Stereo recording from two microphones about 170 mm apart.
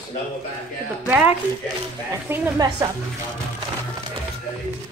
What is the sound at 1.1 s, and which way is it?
Speech, 10° right (ahead or behind).